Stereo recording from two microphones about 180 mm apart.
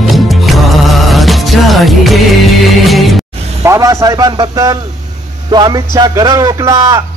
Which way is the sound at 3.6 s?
15° right (ahead or behind).